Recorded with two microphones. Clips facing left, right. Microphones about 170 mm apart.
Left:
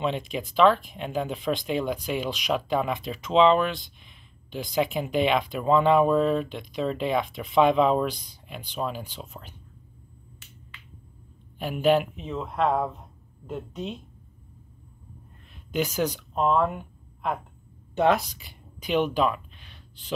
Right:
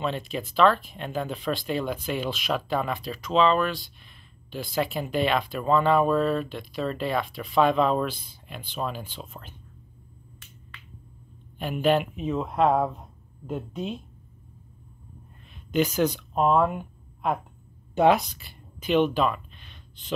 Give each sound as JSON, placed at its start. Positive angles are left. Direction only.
{"t": 0.0, "sound": "speech", "side_deg": 15}
{"t": 11.5, "sound": "speech", "side_deg": 10}
{"t": 12.2, "sound": "speech", "side_deg": -10}
{"t": 15.7, "sound": "speech", "side_deg": 10}
{"t": 16.3, "sound": "speech", "side_deg": -10}
{"t": 18.2, "sound": "gasp", "side_deg": 15}